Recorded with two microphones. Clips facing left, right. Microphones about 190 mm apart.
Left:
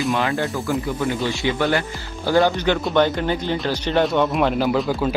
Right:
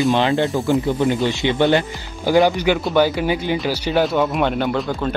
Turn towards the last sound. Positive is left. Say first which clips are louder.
# left 1 dB
turn(degrees=5)  # may be behind; listen again after turning